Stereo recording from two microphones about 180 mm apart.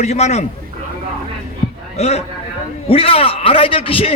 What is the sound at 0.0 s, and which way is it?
Speech, 40° left (ahead or behind).